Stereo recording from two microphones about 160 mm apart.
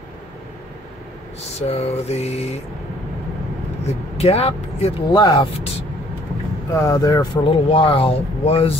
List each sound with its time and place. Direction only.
1.6 s speech: 45° left (ahead or behind)
3.8 s speech: 40° left (ahead or behind)
5.1 s speech: 30° left (ahead or behind)
6.7 s speech: 20° left (ahead or behind); by 8.7 s 35° left (ahead or behind)